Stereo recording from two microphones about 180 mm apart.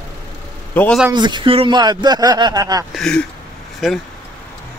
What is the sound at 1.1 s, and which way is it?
Speech, 25° right (ahead or behind).